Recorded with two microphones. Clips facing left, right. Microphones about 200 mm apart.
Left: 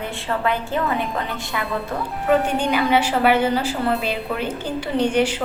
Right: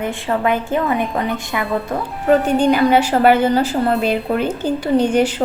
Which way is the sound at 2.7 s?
40° right (ahead or behind).